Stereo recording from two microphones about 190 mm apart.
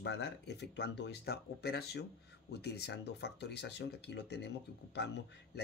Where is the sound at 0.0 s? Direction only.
60° left (ahead or behind).